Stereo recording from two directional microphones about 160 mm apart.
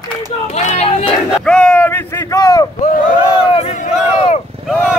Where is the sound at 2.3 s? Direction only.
20° left (ahead or behind).